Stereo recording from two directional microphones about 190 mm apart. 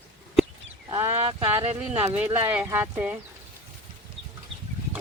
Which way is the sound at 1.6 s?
30° right (ahead or behind).